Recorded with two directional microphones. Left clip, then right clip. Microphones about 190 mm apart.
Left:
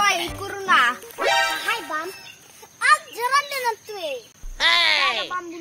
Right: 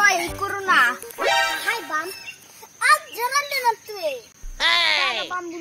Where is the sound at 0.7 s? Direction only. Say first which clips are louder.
Even; 15° left (ahead or behind).